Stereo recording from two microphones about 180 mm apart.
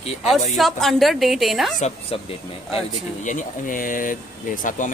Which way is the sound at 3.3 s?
50° left (ahead or behind).